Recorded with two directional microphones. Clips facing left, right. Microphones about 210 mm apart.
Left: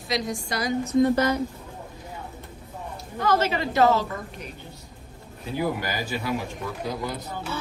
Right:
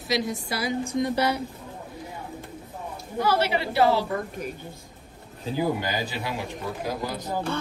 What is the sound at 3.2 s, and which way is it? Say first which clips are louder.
Speech: left 1 dB; 10° right (ahead or behind).